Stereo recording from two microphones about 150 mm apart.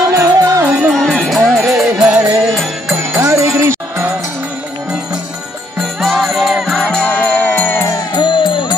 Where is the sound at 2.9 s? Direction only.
20° right (ahead or behind).